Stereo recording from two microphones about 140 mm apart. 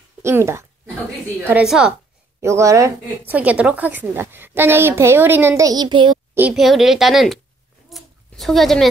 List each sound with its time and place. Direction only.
0.2 s speech: 20° right (ahead or behind)
1.5 s speech: 5° right (ahead or behind)
2.4 s speech: 20° right (ahead or behind)
3.3 s a woman's voice: 10° right (ahead or behind)
5.7 s a child's voice: 30° right (ahead or behind)
6.5 s speech: centre (ahead or behind)
7.9 s a sound: centre (ahead or behind)